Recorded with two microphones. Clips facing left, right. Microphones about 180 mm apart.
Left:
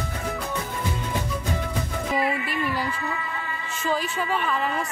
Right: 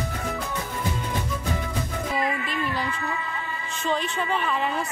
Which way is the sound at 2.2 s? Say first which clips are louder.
Left 1 dB; 10° left (ahead or behind).